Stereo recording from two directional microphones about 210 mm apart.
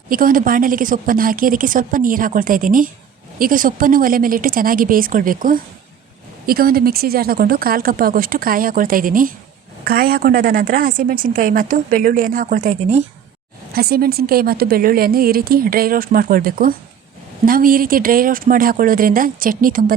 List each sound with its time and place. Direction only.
0.1 s a woman's voice: 40° right (ahead or behind)
13.7 s a woman's voice: 45° right (ahead or behind)